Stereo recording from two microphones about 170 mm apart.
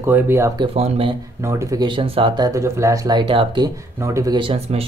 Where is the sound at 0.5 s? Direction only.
35° right (ahead or behind).